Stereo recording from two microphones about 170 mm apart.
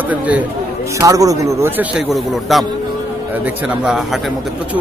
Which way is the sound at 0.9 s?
20° right (ahead or behind).